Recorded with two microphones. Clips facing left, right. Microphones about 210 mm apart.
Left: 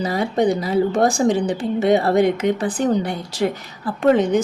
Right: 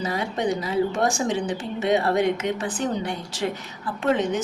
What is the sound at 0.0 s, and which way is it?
Speech, 35° left (ahead or behind).